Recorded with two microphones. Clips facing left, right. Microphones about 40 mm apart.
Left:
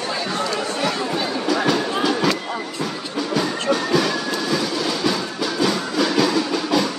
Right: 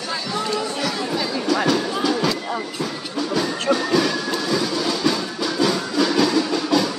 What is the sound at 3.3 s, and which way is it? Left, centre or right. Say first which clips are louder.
Music: even; centre.